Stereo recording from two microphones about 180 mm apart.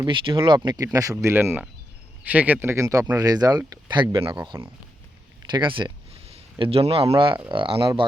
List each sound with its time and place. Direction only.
0.0 s speech: 25° right (ahead or behind)
1.2 s speech: 15° right (ahead or behind); by 4.4 s 30° right (ahead or behind)
4.4 s speech: 15° right (ahead or behind)